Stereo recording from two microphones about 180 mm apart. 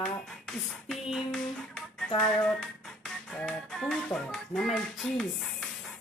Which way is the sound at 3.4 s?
5° left (ahead or behind).